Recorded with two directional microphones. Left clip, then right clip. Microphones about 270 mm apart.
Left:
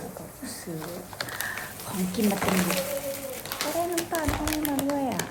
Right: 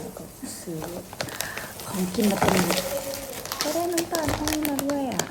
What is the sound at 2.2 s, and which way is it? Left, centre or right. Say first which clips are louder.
Speech: right 4 dB; right.